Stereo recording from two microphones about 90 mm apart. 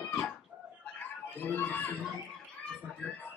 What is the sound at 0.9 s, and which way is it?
Chuckle, 20° left (ahead or behind).